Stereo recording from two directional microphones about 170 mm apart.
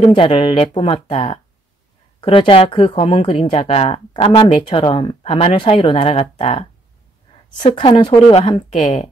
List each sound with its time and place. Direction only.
0.0 s speech: 35° left (ahead or behind)